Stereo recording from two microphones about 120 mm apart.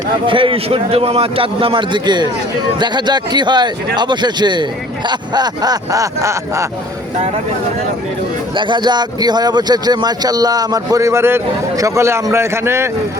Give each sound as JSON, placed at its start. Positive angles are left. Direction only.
{"t": 0.3, "sound": "a man's voice", "side_deg": -45}
{"t": 8.5, "sound": "a man's voice", "side_deg": -40}